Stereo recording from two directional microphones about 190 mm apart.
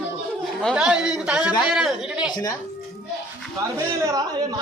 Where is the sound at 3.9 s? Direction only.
15° right (ahead or behind).